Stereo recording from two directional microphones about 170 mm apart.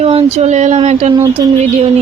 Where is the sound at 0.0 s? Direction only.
35° right (ahead or behind).